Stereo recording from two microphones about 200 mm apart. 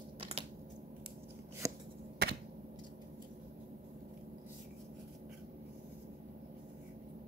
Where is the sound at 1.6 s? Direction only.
15° right (ahead or behind).